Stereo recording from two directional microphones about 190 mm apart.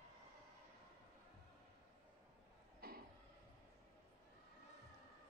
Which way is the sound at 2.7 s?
55° right (ahead or behind).